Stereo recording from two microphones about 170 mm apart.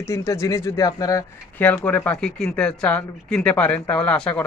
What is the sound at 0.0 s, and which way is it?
Speech, 15° left (ahead or behind).